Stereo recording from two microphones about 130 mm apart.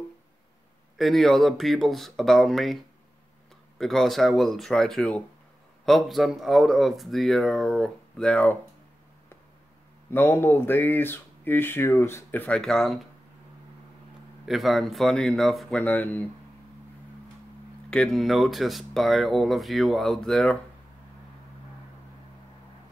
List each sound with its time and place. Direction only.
0.9 s speech: centre (ahead or behind)
10.1 s speech: 15° left (ahead or behind)
14.5 s speech: centre (ahead or behind)
15.8 s speech: 15° left (ahead or behind)
17.8 s speech: 5° left (ahead or behind)